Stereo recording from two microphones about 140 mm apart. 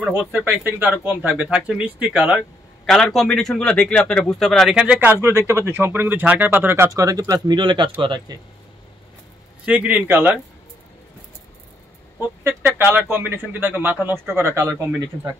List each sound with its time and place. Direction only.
0.0 s speech: 10° right (ahead or behind)
5.2 s speech: 20° right (ahead or behind); by 8.4 s 35° right (ahead or behind)
9.7 s speech: 10° right (ahead or behind)
12.2 s speech: 15° right (ahead or behind)